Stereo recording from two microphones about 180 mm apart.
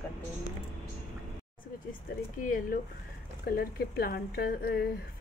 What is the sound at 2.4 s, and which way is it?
A woman's voice, 50° left (ahead or behind).